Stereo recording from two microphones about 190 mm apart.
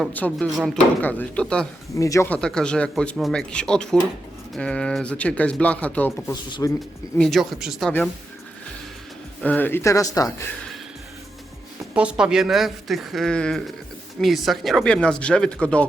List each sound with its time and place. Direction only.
0.1 s speech: 5° left (ahead or behind)
2.0 s speech: 15° left (ahead or behind)
7.2 s speech: centre (ahead or behind)
9.4 s speech: 10° left (ahead or behind)
11.9 s speech: 5° right (ahead or behind)